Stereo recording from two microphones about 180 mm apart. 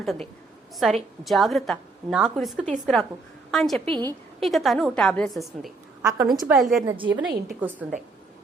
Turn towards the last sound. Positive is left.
turn(degrees=-10)  # may be behind; listen again after turning